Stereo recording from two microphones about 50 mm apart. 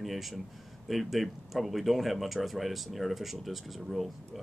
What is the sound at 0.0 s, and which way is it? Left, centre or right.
Speech, centre.